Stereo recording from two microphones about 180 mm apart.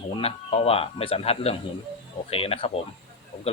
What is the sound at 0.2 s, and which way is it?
Speech, 35° left (ahead or behind).